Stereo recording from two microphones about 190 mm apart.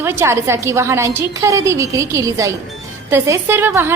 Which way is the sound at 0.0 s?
15° right (ahead or behind).